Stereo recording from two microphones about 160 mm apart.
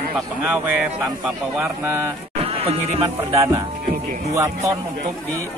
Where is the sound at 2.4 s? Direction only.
40° right (ahead or behind).